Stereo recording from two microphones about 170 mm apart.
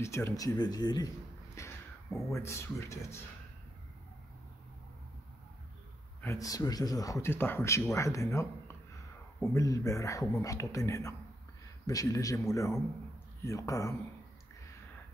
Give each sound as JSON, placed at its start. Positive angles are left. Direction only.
{"t": 0.0, "sound": "speech", "side_deg": 15}
{"t": 1.6, "sound": "a sound", "side_deg": 15}
{"t": 2.2, "sound": "speech", "side_deg": 15}
{"t": 6.2, "sound": "speech", "side_deg": 20}